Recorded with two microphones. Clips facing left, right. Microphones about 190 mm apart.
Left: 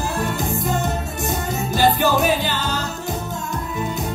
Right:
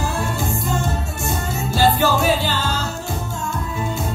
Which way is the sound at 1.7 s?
15° left (ahead or behind).